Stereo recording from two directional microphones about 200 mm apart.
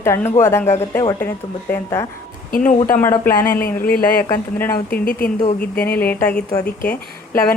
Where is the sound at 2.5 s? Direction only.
40° left (ahead or behind).